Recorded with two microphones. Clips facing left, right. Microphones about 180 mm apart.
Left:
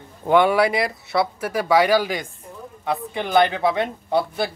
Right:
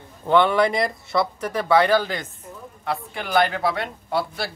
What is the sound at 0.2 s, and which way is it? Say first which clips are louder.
Speech: left 1 dB; 10° left (ahead or behind).